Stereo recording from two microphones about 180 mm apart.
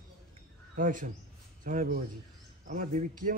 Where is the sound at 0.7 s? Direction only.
50° right (ahead or behind).